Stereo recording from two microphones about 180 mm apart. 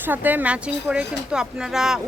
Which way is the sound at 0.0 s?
10° right (ahead or behind).